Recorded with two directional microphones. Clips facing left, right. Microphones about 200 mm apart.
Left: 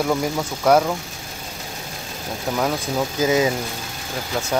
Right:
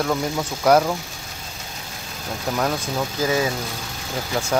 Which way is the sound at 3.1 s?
20° left (ahead or behind).